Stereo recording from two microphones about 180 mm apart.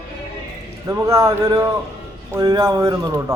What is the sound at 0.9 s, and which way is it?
Speech, 15° right (ahead or behind).